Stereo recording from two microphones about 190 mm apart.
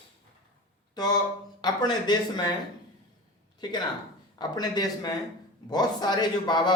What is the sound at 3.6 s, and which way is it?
Speech, 20° left (ahead or behind).